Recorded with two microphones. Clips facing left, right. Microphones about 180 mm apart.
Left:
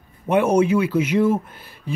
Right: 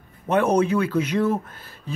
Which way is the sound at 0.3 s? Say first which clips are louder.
Left 2 dB; 10° left (ahead or behind).